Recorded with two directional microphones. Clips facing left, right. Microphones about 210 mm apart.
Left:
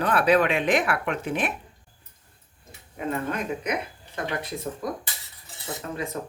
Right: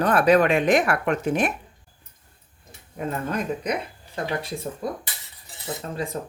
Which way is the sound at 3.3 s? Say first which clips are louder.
Right 2 dB; 30° right (ahead or behind).